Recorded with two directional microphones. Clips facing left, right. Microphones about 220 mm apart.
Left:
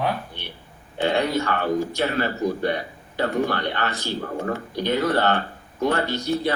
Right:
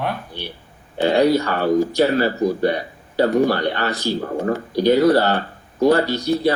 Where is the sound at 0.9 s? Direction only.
35° right (ahead or behind).